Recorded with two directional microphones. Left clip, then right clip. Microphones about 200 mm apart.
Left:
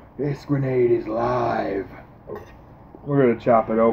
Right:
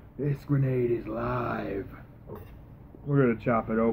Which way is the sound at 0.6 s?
Centre (ahead or behind).